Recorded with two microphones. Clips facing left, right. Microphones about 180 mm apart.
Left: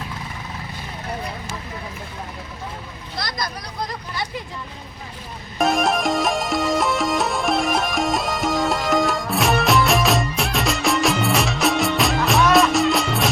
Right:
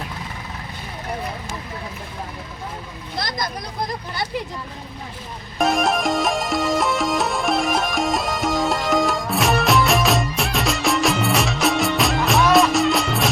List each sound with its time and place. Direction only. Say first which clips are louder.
3.2 s vehicle: right 2 dB; 25° right (ahead or behind)
5.5 s music: even; centre (ahead or behind)